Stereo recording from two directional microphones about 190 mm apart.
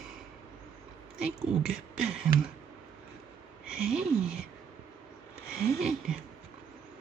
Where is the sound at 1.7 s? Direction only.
5° right (ahead or behind).